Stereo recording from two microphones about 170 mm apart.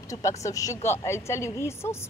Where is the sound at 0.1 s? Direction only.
20° left (ahead or behind).